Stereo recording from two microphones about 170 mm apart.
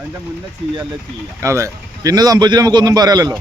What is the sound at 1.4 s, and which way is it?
A man's voice, 15° right (ahead or behind).